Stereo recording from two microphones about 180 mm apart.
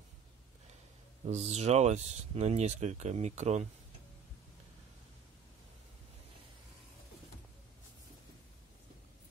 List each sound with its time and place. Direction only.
1.2 s speech: 40° right (ahead or behind)